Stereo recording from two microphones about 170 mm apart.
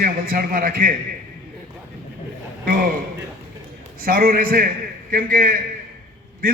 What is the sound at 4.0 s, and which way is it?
A man's voice, 60° right (ahead or behind).